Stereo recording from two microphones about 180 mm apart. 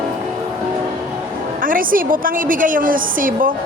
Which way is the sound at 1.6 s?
50° right (ahead or behind).